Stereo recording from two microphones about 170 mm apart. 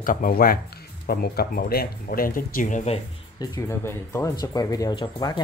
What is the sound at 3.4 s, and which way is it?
Speech, 20° left (ahead or behind).